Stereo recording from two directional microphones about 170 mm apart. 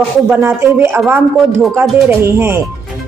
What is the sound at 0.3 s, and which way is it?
A woman's voice, 15° right (ahead or behind).